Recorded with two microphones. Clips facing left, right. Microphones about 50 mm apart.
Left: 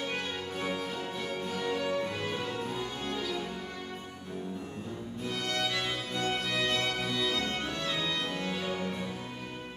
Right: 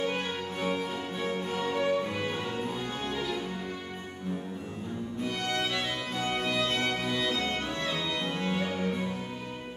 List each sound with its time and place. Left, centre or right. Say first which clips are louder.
0.0 s music: right 4 dB; centre
6.1 s music: right 2 dB; right